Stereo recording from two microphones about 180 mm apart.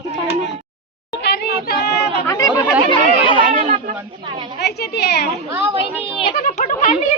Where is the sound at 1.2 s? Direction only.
70° left (ahead or behind).